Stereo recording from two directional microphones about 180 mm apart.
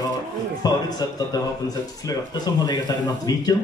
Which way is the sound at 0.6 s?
20° left (ahead or behind).